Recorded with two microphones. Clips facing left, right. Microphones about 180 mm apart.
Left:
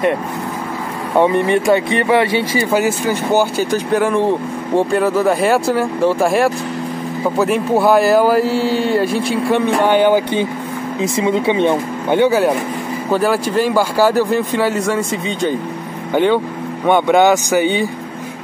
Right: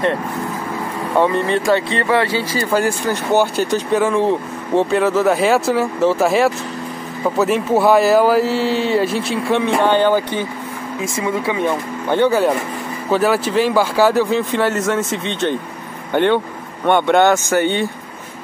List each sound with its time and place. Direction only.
1.1 s speech: 15° left (ahead or behind)
2.6 s speech: 10° left (ahead or behind)
9.8 s speech: 10° left (ahead or behind)
12.2 s speech: 5° left (ahead or behind)